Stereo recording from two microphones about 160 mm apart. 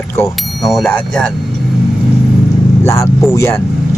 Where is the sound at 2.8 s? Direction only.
20° left (ahead or behind).